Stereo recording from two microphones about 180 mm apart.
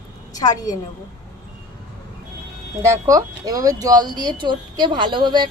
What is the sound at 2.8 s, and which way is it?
Speech, 15° right (ahead or behind).